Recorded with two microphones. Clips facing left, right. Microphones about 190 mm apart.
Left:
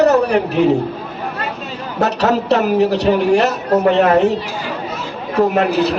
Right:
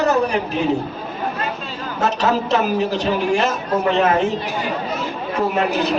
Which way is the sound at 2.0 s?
65° left (ahead or behind).